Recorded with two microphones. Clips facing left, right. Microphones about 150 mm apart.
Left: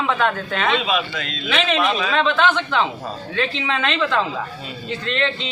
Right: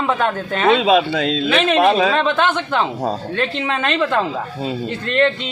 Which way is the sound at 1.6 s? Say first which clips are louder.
Right 6 dB; 55° right (ahead or behind).